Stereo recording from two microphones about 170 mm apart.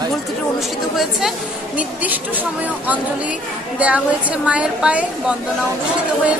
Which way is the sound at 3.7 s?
10° right (ahead or behind).